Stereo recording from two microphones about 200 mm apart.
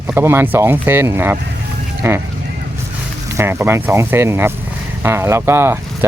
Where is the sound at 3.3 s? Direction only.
15° right (ahead or behind).